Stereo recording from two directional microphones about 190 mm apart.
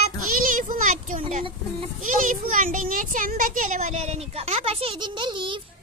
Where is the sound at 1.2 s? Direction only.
30° right (ahead or behind).